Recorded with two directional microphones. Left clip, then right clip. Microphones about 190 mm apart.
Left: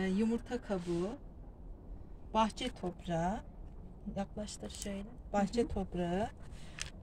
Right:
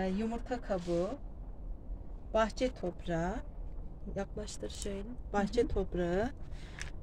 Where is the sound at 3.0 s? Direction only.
35° right (ahead or behind).